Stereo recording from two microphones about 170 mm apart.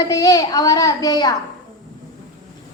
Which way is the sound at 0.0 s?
20° left (ahead or behind).